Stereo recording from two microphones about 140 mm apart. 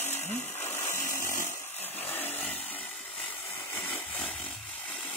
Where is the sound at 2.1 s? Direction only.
15° left (ahead or behind).